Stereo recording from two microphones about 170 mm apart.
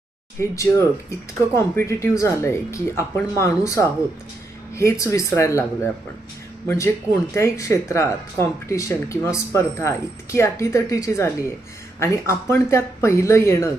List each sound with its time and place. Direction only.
0.3 s speech: 15° left (ahead or behind)